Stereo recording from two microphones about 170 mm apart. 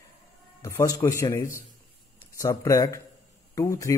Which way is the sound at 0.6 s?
20° left (ahead or behind).